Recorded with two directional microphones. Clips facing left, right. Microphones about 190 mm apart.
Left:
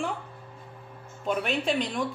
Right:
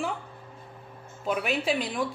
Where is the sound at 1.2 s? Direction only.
5° right (ahead or behind).